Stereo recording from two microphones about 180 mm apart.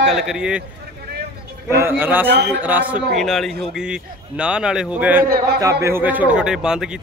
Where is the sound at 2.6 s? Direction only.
10° right (ahead or behind).